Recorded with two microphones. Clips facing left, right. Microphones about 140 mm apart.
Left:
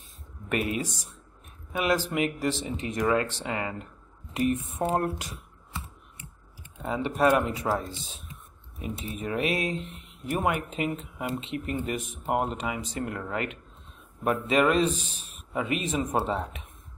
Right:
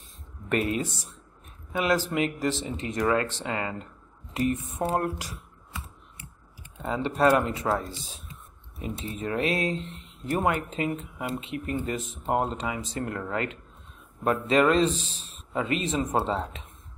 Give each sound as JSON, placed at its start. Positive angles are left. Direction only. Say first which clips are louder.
{"t": 0.5, "sound": "speech", "louder": "right 2 dB", "side_deg": 10}
{"t": 4.9, "sound": "a sound", "louder": "even", "side_deg": 25}
{"t": 6.8, "sound": "speech", "louder": "right 1 dB", "side_deg": 15}
{"t": 7.8, "sound": "speech", "louder": "even", "side_deg": 25}